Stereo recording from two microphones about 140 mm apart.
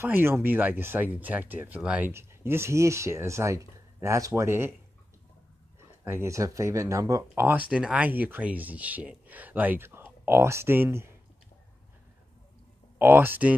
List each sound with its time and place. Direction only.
0.0 s speech: 15° right (ahead or behind)
6.0 s speech: 20° right (ahead or behind)
13.0 s speech: 15° right (ahead or behind)